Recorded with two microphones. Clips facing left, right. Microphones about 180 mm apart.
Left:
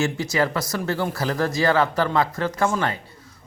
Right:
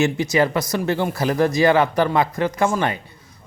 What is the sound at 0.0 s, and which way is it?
A man's voice, 20° right (ahead or behind).